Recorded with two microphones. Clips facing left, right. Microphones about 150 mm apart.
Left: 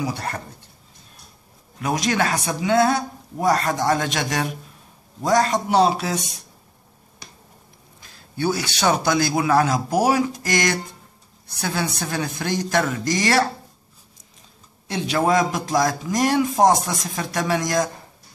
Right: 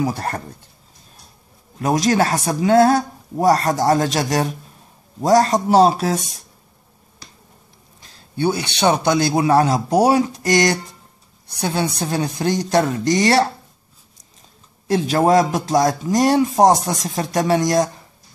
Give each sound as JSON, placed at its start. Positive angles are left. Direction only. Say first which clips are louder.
{"t": 0.0, "sound": "speech", "louder": "right 5 dB", "side_deg": -45}
{"t": 1.8, "sound": "speech", "louder": "right 5 dB", "side_deg": -40}
{"t": 8.0, "sound": "a woman's voice", "louder": "right 4 dB", "side_deg": -25}
{"t": 14.9, "sound": "speech", "louder": "right 5 dB", "side_deg": -40}